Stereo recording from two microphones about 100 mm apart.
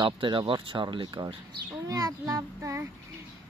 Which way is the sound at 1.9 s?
35° right (ahead or behind).